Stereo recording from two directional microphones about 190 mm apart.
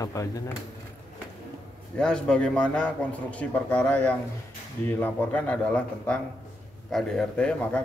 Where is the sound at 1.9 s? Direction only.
5° left (ahead or behind).